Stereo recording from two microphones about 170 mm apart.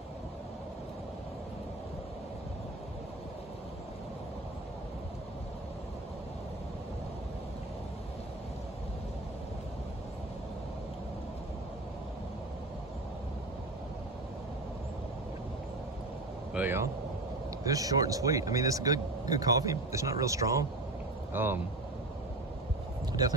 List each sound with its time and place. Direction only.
16.5 s a man's voice: 10° right (ahead or behind)